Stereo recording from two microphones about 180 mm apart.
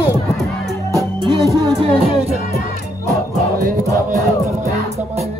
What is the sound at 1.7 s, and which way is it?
Speech, 30° right (ahead or behind).